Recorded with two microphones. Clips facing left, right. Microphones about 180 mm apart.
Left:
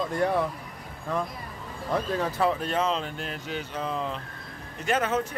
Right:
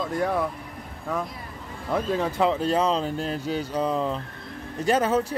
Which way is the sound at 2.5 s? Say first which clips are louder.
Right 4 dB; 30° right (ahead or behind).